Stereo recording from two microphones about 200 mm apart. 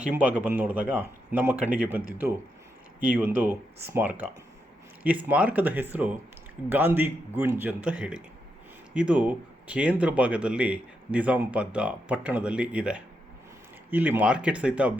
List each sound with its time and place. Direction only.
0.0 s speech: 5° right (ahead or behind)